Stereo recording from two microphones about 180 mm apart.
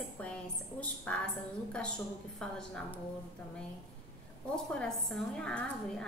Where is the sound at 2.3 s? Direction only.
5° left (ahead or behind).